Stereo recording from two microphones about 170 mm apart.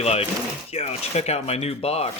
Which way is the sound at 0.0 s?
35° left (ahead or behind).